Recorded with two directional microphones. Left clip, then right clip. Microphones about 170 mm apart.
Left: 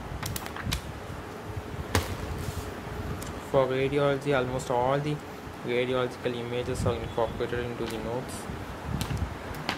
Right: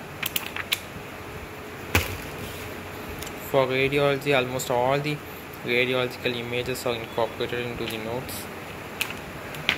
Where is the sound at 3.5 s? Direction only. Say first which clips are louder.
Right 3 dB; 5° right (ahead or behind).